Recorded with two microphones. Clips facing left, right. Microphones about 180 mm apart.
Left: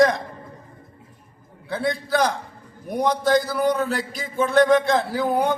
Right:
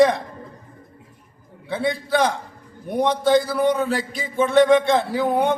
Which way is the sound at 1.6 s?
Centre (ahead or behind).